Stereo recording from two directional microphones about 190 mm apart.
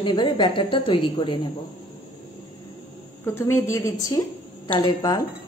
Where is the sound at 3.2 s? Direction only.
10° left (ahead or behind).